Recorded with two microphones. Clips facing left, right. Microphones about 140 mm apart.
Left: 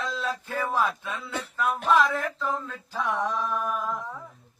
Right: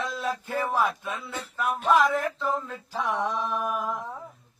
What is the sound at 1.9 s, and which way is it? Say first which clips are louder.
Speech: right 2 dB; 15° right (ahead or behind).